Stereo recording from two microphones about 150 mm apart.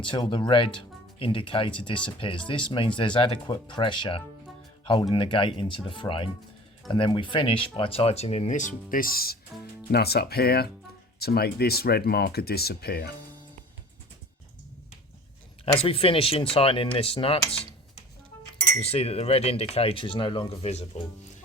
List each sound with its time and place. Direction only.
0.0 s speech: 35° left (ahead or behind); by 13.1 s 90° left
15.6 s speech: 40° left (ahead or behind)
18.9 s speech: 40° left (ahead or behind)